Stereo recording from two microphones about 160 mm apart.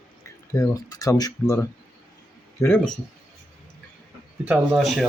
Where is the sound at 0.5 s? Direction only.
20° left (ahead or behind).